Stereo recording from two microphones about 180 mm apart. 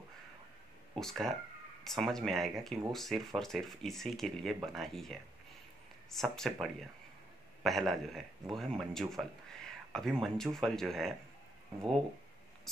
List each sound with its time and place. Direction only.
0.9 s speech: centre (ahead or behind)